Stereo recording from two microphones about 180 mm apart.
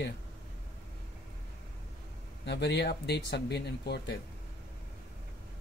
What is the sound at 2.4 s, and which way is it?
Speech, 70° left (ahead or behind).